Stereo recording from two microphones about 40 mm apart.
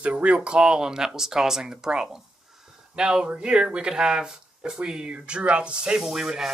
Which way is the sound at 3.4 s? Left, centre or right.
Right.